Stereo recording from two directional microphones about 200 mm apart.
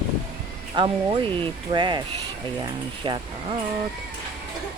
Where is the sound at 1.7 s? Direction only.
20° right (ahead or behind).